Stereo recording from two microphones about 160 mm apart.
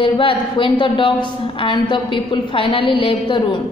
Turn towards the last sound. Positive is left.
turn(degrees=30)  # may be behind; listen again after turning